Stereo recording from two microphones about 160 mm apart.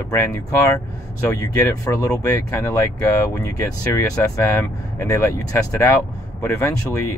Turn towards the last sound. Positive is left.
turn(degrees=15)  # may be behind; listen again after turning